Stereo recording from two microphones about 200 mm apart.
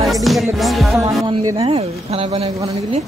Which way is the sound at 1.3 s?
25° right (ahead or behind).